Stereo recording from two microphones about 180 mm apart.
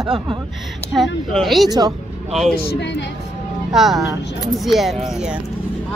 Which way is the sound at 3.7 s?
Centre (ahead or behind).